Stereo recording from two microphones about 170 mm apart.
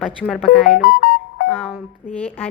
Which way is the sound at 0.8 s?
65° left (ahead or behind).